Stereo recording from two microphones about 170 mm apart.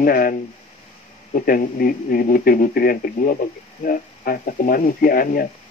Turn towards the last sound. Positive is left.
turn(degrees=55)  # may be behind; listen again after turning